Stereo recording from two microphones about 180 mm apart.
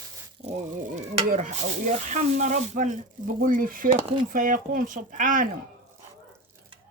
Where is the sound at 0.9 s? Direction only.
40° right (ahead or behind).